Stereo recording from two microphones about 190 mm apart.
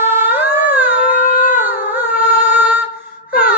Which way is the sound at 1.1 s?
45° left (ahead or behind).